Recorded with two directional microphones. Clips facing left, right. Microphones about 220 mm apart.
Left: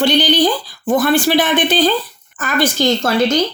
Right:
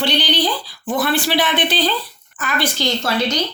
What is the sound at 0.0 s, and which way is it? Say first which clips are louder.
Speech: left 6 dB; 45° left (ahead or behind).